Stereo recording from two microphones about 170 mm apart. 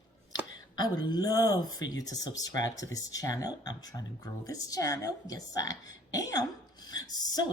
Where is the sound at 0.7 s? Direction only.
25° left (ahead or behind).